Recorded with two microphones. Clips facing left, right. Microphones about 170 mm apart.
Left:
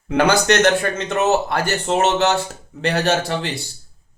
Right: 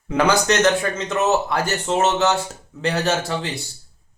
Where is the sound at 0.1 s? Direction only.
60° left (ahead or behind).